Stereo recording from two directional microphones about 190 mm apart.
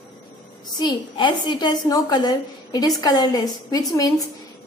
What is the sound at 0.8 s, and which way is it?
A woman's voice, 25° left (ahead or behind).